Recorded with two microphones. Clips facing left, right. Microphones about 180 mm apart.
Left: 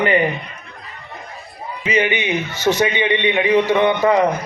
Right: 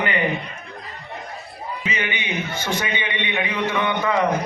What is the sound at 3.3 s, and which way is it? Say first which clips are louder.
Speech: left 8 dB; 30° left (ahead or behind).